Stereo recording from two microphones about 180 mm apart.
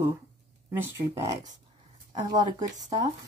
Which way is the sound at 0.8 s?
10° right (ahead or behind).